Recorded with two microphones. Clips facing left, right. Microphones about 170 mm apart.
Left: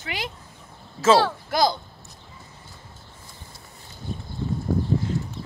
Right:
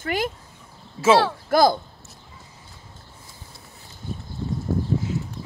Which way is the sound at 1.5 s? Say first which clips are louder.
Right 6 dB; 50° right (ahead or behind).